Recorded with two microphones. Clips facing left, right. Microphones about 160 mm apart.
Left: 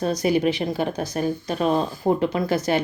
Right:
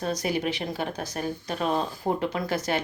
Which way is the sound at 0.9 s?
25° left (ahead or behind).